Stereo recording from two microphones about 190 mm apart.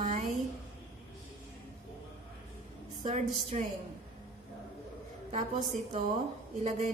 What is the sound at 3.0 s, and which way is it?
Speech, 35° right (ahead or behind).